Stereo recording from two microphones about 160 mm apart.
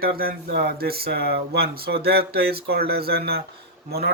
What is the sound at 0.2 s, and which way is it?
Speech, 70° right (ahead or behind).